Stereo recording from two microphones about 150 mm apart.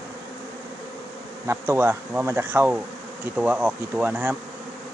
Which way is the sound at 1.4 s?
15° right (ahead or behind).